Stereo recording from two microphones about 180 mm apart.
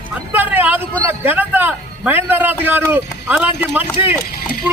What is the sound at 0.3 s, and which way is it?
Vehicle, 10° right (ahead or behind).